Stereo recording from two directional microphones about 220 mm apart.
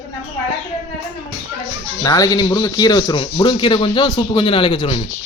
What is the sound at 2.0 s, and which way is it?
Speech, 15° left (ahead or behind).